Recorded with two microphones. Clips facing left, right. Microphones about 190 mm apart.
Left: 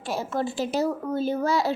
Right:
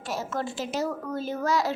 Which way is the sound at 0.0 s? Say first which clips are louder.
Left 3 dB; 30° left (ahead or behind).